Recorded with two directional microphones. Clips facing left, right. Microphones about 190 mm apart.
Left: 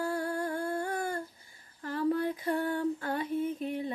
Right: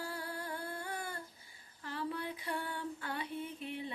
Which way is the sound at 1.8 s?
45° left (ahead or behind).